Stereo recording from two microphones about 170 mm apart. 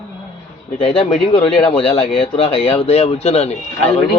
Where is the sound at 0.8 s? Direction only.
35° left (ahead or behind).